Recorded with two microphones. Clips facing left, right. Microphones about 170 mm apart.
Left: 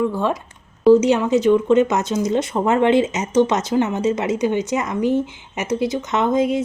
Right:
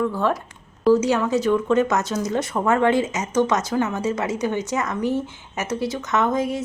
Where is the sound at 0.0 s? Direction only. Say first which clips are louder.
Left 2 dB; 20° left (ahead or behind).